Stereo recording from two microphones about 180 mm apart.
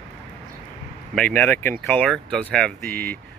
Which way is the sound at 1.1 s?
10° left (ahead or behind).